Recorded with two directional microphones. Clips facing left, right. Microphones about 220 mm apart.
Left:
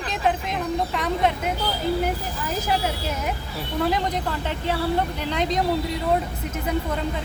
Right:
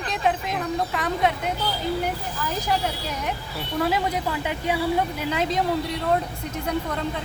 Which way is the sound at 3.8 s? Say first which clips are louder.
Even; 5° right (ahead or behind).